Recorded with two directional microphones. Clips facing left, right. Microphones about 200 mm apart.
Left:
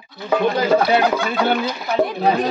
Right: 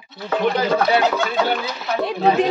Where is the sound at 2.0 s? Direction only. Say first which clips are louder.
Even; 25° right (ahead or behind).